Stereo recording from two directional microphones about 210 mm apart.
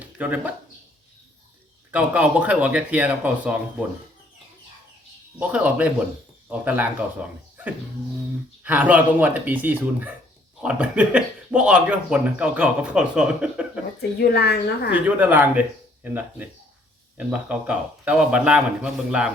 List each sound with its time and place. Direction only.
0.2 s speech: 5° right (ahead or behind)
1.9 s speech: 5° right (ahead or behind)
5.4 s speech: 5° right (ahead or behind)
14.2 s a woman's voice: 50° left (ahead or behind)
14.8 s speech: 5° right (ahead or behind)